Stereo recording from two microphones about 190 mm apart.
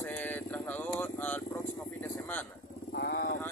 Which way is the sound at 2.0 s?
10° left (ahead or behind).